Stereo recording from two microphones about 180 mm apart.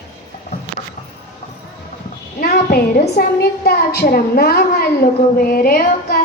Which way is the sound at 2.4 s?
60° left (ahead or behind).